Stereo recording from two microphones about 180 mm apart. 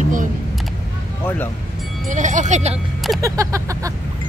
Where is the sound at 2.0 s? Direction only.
45° right (ahead or behind).